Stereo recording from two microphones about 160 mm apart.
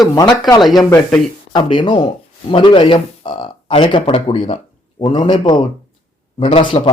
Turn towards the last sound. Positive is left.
turn(degrees=35)  # may be behind; listen again after turning